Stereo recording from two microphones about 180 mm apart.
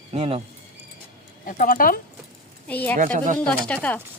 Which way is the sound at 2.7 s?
10° left (ahead or behind).